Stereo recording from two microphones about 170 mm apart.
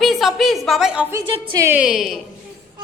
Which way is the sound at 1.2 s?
30° right (ahead or behind).